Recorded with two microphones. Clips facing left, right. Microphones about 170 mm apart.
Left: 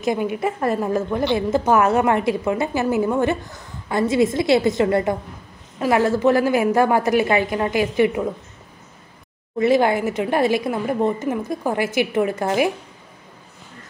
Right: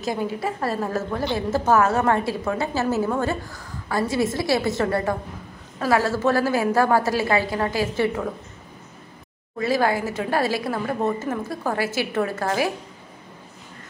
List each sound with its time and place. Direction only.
0.0 s a woman's voice: 20° left (ahead or behind)
9.6 s a woman's voice: 20° left (ahead or behind)